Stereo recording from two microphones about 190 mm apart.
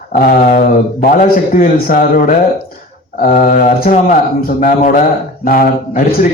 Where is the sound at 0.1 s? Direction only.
50° left (ahead or behind).